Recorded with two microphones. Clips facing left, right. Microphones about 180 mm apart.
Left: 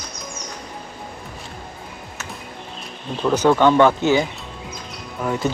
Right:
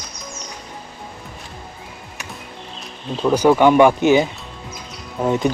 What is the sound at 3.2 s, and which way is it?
Speech, 10° right (ahead or behind).